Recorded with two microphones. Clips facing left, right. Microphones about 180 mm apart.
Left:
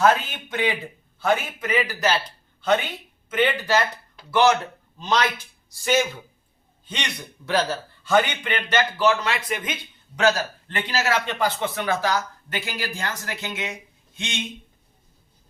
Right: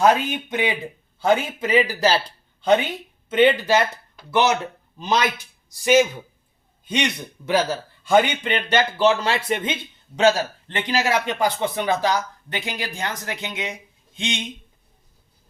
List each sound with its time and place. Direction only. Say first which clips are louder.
0.0 s a man's voice: right 2 dB; 15° right (ahead or behind)
3.2 s a man's voice: right 6 dB; 25° right (ahead or behind)
4.9 s a man's voice: right 1 dB; 10° right (ahead or behind)
8.4 s a man's voice: right 2 dB; 25° right (ahead or behind)